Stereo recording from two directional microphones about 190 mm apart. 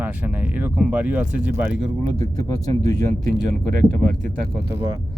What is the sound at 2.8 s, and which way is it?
Speech, 15° left (ahead or behind).